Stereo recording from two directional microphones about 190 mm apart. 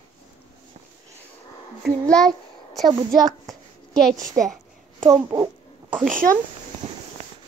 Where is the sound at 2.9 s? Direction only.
20° right (ahead or behind).